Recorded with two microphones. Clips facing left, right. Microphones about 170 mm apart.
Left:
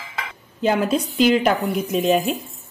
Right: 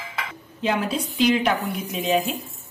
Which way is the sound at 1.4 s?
45° left (ahead or behind).